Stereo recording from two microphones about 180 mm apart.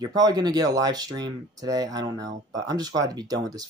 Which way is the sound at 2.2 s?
90° right.